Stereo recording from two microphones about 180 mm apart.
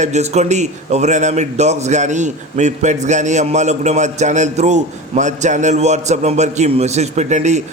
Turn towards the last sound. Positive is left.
turn(degrees=-40)  # may be behind; listen again after turning